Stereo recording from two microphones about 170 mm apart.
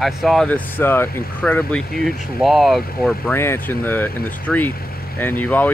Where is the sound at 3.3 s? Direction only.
10° left (ahead or behind).